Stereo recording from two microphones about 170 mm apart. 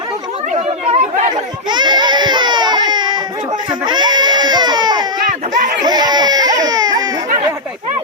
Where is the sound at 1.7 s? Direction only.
25° right (ahead or behind).